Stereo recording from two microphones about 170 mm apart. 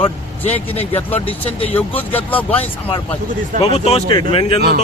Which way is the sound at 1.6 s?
10° left (ahead or behind).